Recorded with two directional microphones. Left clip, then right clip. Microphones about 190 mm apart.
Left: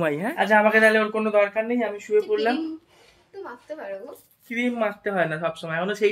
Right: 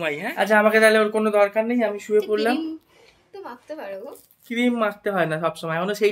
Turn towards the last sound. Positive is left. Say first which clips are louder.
# right 1 dB
turn(degrees=-25)  # may be behind; listen again after turning